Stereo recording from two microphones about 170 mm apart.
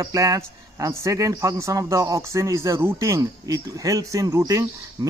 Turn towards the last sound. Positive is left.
turn(degrees=-20)  # may be behind; listen again after turning